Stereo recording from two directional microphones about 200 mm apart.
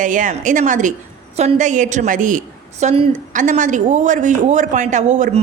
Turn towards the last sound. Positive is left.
turn(degrees=-35)  # may be behind; listen again after turning